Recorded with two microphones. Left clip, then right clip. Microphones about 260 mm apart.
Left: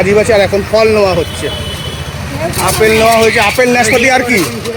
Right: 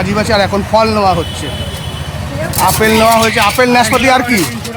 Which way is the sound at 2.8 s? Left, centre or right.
Centre.